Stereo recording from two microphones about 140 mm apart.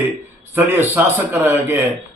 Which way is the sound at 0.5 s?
15° right (ahead or behind).